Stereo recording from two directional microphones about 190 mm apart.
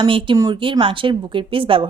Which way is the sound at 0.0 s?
25° right (ahead or behind).